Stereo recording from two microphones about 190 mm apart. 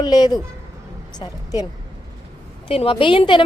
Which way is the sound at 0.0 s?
20° left (ahead or behind).